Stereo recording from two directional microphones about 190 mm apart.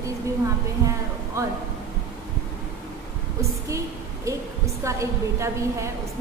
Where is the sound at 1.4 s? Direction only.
15° right (ahead or behind).